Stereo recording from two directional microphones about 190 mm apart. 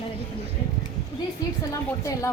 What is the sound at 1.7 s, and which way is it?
Speech, 15° left (ahead or behind).